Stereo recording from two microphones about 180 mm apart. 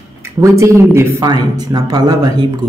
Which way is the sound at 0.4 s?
15° right (ahead or behind).